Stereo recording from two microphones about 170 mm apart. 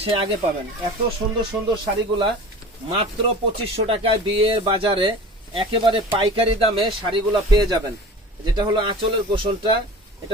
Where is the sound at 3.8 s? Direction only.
35° right (ahead or behind).